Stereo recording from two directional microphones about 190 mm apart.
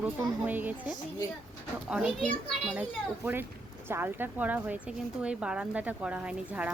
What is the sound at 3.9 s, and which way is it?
A woman's voice, 10° right (ahead or behind).